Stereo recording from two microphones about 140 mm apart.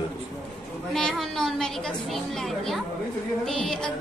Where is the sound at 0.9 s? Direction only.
Centre (ahead or behind).